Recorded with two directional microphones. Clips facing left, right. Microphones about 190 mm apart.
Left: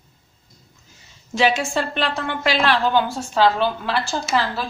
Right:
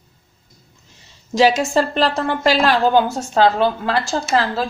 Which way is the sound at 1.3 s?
40° right (ahead or behind).